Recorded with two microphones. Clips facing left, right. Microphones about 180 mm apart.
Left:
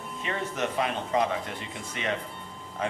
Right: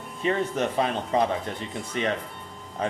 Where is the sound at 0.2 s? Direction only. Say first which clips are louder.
Right 6 dB; 35° right (ahead or behind).